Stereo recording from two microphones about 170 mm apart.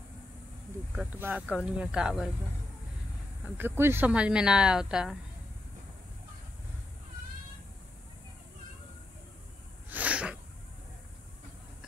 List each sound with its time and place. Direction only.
0.9 s speech: 10° right (ahead or behind)
3.4 s speech: 10° right (ahead or behind)
9.8 s sneeze: 10° right (ahead or behind)